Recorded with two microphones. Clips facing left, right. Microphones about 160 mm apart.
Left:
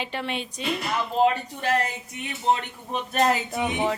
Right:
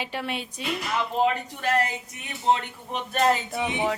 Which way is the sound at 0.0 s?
10° right (ahead or behind).